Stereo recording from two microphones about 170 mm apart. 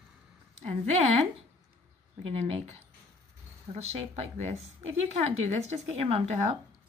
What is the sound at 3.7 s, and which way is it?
Speech, 40° right (ahead or behind).